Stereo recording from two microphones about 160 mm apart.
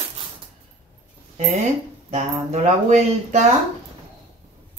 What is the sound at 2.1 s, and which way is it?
Speech, 45° right (ahead or behind).